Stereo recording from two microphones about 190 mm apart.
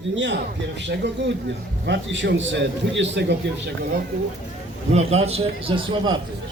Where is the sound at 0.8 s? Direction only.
65° right (ahead or behind).